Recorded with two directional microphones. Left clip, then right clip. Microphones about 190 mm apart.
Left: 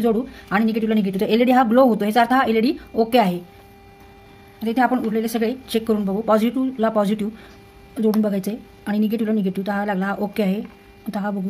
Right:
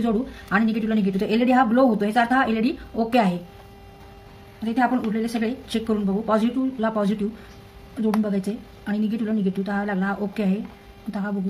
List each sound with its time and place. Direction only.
0.0 s a woman's voice: 40° left (ahead or behind)
4.6 s a woman's voice: 45° left (ahead or behind)